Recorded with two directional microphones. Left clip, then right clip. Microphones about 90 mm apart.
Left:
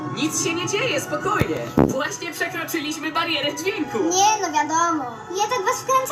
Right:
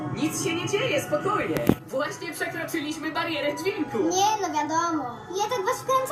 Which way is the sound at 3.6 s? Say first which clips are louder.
Left 3 dB; 35° left (ahead or behind).